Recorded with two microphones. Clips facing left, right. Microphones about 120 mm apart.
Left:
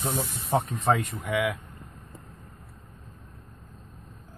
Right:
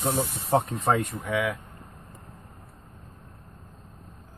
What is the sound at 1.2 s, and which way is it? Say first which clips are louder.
Speech: even; 10° left (ahead or behind).